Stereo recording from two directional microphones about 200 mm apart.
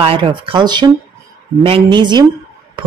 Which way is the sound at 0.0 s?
25° right (ahead or behind).